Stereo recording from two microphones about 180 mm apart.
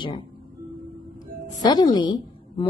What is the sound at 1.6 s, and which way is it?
A woman's voice, 20° left (ahead or behind).